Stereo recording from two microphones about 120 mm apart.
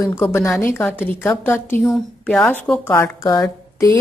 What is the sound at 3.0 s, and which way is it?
Speech, 30° left (ahead or behind).